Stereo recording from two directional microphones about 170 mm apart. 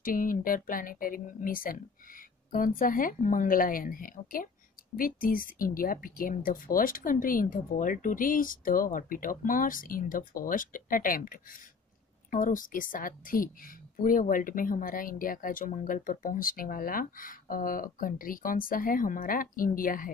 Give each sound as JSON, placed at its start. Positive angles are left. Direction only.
{"t": 0.0, "sound": "a woman's voice", "side_deg": 55}